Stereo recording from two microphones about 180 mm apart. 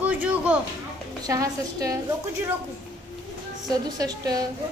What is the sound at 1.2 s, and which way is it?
Speech, 20° right (ahead or behind).